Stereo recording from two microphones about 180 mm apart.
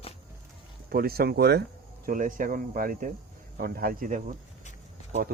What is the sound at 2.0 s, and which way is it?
Speech, 50° right (ahead or behind).